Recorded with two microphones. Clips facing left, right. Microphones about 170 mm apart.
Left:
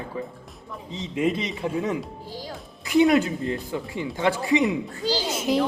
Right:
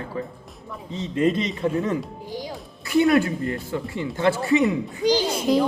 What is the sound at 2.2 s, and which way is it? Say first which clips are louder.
Music: right 4 dB; 15° right (ahead or behind).